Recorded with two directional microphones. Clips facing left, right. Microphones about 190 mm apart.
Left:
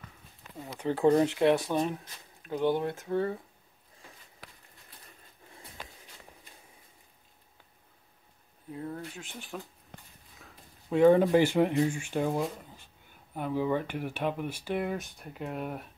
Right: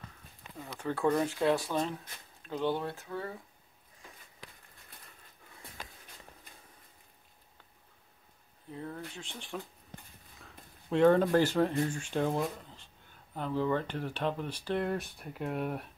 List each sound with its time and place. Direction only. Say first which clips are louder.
0.7 s speech: left 5 dB; 20° left (ahead or behind)
8.6 s speech: left 3 dB; 5° left (ahead or behind)